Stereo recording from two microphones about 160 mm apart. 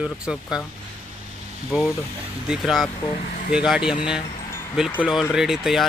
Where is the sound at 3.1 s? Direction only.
50° left (ahead or behind).